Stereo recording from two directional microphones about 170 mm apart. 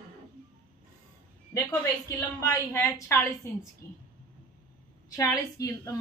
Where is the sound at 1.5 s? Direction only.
20° left (ahead or behind).